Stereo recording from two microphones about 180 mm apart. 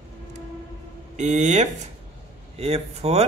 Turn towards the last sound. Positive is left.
turn(degrees=-35)  # may be behind; listen again after turning